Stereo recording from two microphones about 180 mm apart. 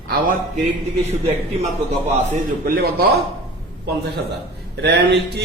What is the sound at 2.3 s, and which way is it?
Speech, 55° right (ahead or behind).